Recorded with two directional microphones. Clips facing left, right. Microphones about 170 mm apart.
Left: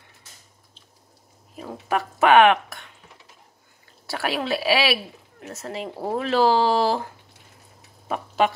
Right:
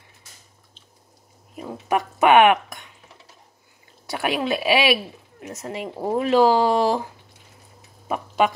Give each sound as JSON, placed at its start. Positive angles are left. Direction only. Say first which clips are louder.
{"t": 1.6, "sound": "speech", "louder": "right 2 dB", "side_deg": -15}
{"t": 4.1, "sound": "speech", "louder": "right 2 dB", "side_deg": -15}